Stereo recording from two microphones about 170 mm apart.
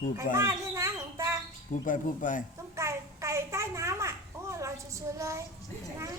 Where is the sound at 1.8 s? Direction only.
50° left (ahead or behind).